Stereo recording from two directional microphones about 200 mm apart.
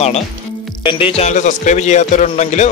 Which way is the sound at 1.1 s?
35° left (ahead or behind).